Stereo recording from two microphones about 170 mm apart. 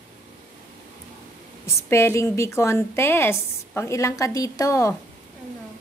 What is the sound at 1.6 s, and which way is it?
A woman's voice, 15° left (ahead or behind).